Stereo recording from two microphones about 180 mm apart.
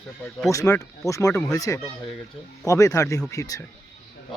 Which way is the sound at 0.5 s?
15° left (ahead or behind).